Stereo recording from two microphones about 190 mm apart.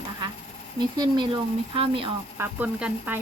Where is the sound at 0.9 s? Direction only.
20° right (ahead or behind).